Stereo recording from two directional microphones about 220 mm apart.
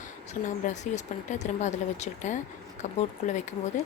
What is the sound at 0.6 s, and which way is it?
A woman's voice, 30° left (ahead or behind).